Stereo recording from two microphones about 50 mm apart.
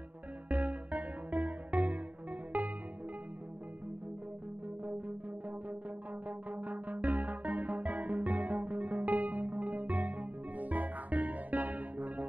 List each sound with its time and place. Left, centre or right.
0.5 s music: right
6.2 s music: right